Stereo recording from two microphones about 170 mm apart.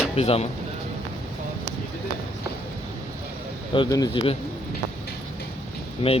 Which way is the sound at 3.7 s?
25° left (ahead or behind).